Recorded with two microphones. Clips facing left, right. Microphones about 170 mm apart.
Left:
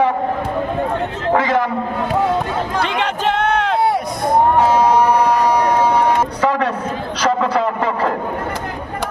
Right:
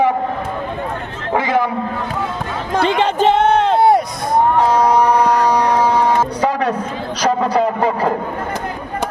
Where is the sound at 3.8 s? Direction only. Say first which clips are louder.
Right 5 dB; 50° right (ahead or behind).